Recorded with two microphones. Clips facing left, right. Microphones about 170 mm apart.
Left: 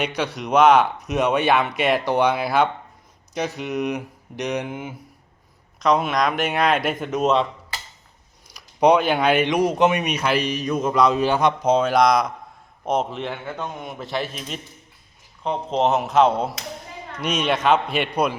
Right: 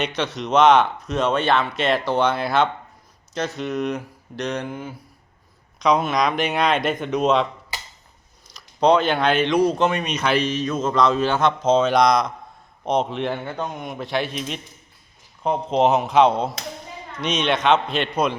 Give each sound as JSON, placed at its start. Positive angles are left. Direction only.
{"t": 0.2, "sound": "speech", "side_deg": 10}
{"t": 5.8, "sound": "a man's voice", "side_deg": 0}
{"t": 8.4, "sound": "a man's voice", "side_deg": 15}